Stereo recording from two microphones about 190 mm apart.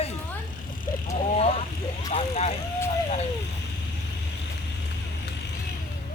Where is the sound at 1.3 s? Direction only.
30° left (ahead or behind).